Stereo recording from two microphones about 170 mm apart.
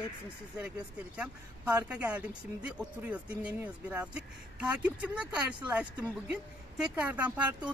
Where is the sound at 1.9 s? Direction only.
5° right (ahead or behind).